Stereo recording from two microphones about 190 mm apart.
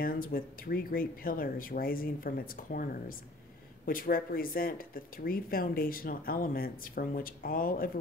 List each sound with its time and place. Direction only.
0.0 s speech: 50° left (ahead or behind)